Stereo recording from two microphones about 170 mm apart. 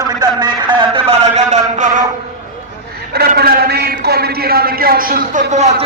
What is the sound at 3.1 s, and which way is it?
A man's voice, 65° right (ahead or behind).